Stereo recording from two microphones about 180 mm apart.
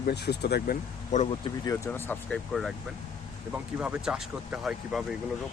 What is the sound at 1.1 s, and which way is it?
Speech, 40° left (ahead or behind).